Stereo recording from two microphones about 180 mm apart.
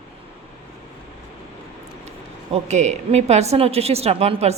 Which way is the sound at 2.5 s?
40° right (ahead or behind).